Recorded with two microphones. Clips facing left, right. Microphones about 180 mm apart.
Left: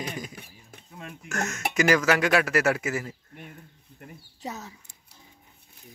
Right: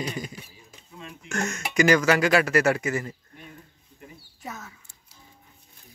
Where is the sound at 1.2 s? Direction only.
Centre (ahead or behind).